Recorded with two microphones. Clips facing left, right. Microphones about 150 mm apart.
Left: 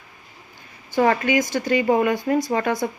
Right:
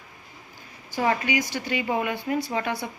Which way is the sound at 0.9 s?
50° left (ahead or behind).